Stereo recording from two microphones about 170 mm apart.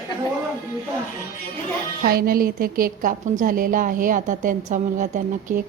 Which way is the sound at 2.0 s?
60° right (ahead or behind).